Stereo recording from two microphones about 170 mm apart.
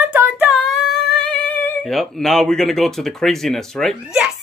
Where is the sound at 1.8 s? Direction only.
Centre (ahead or behind).